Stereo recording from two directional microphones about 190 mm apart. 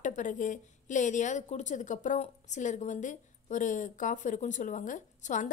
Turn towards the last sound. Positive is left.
turn(degrees=40)  # may be behind; listen again after turning